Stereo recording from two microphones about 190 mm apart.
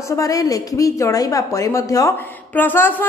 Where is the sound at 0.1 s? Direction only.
20° left (ahead or behind).